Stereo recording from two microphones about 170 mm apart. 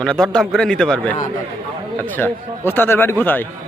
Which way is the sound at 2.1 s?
10° left (ahead or behind).